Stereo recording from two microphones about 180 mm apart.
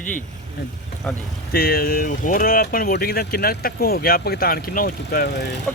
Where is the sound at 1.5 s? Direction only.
60° left (ahead or behind).